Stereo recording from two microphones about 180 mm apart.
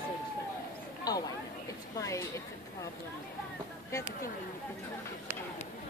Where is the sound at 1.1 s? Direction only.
20° left (ahead or behind).